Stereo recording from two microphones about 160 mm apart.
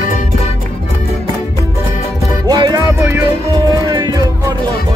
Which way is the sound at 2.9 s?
15° right (ahead or behind).